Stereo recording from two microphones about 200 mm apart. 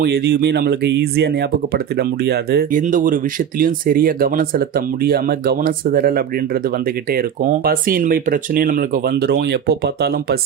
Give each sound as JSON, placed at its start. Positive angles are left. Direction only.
{"t": 0.0, "sound": "speech", "side_deg": -55}